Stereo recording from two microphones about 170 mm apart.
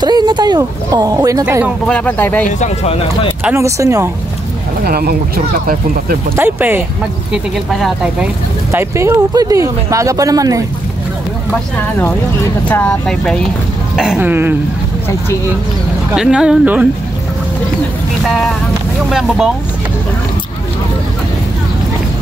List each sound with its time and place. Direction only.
0.0 s speech: 25° right (ahead or behind)
1.4 s speech: 10° right (ahead or behind)
1.9 s speech: 5° left (ahead or behind)
2.6 s speech: 35° left (ahead or behind)
3.4 s speech: 15° right (ahead or behind)
4.8 s speech: 65° right (ahead or behind)
6.3 s speech: 10° right (ahead or behind)
7.5 s speech: centre (ahead or behind)
8.7 s speech: 15° right (ahead or behind)
12.6 s speech: 10° left (ahead or behind); by 14.5 s 10° right (ahead or behind)
16.2 s speech: 5° right (ahead or behind)
18.2 s speech: centre (ahead or behind)